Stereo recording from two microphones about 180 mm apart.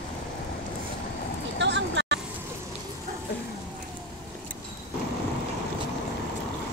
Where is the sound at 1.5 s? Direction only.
85° right.